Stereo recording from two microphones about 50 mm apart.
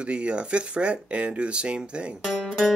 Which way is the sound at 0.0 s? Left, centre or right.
Right.